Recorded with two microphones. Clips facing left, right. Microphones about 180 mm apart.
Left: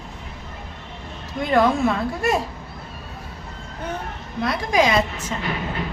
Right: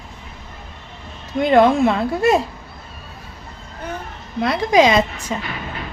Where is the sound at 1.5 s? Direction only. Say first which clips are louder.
Right 4 dB; 25° right (ahead or behind).